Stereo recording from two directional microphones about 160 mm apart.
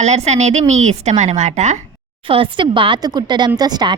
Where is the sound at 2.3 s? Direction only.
35° right (ahead or behind).